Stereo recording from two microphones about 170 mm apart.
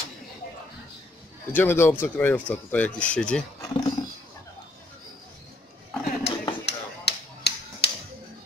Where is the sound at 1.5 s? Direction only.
15° left (ahead or behind).